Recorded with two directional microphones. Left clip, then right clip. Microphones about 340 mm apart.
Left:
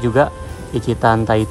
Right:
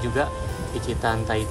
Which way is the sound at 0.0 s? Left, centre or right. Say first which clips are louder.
Left 9 dB; centre.